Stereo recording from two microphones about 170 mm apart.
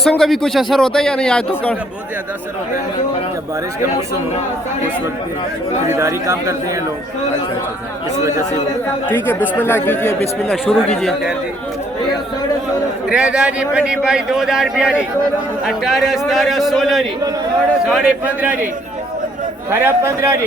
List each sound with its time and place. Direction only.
0.0 s a man's voice: centre (ahead or behind)
5.9 s a man's voice: 15° right (ahead or behind)
9.0 s speech: 10° left (ahead or behind)
10.5 s a man's voice: centre (ahead or behind)
13.1 s a man's voice: 5° right (ahead or behind)
19.7 s a man's voice: 15° right (ahead or behind)